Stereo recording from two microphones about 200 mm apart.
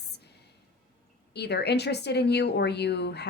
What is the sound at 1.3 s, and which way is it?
Speech, 55° left (ahead or behind).